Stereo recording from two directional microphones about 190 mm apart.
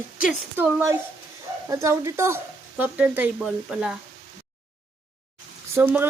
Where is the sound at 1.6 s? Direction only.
15° right (ahead or behind).